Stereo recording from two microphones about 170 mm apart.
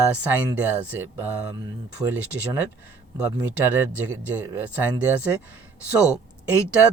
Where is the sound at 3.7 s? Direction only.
10° right (ahead or behind).